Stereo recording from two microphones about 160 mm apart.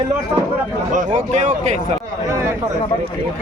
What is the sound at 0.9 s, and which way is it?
Speech, 50° right (ahead or behind).